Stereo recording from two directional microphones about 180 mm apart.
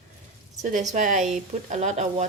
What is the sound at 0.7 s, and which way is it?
A woman's voice, 45° right (ahead or behind).